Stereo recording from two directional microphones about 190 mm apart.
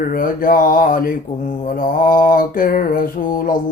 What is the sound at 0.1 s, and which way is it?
Mantra, 50° left (ahead or behind).